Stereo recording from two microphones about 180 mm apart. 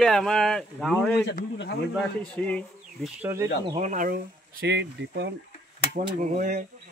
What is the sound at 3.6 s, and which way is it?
Speech, 40° right (ahead or behind).